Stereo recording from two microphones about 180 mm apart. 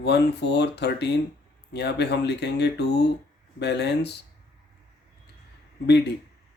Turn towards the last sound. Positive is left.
turn(degrees=65)  # may be behind; listen again after turning